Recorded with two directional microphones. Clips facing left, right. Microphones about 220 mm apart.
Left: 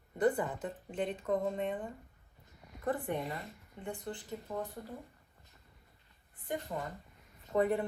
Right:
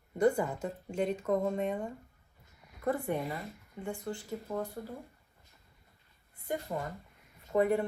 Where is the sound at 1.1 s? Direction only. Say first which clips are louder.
Right 2 dB; 40° right (ahead or behind).